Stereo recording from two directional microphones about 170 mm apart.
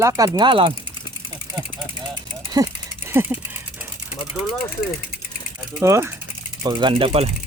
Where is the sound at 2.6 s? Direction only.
20° right (ahead or behind).